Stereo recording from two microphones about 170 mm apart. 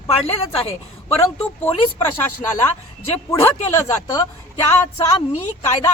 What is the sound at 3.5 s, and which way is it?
A woman's voice, 25° left (ahead or behind).